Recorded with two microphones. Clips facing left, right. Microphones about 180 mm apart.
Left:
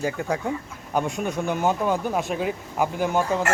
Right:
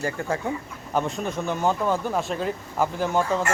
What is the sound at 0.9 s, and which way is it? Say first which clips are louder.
Speech: left 1 dB; 10° left (ahead or behind).